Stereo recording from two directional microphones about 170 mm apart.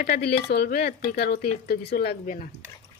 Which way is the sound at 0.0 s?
75° left (ahead or behind).